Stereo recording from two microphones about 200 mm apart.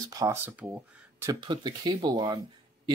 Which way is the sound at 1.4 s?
20° right (ahead or behind).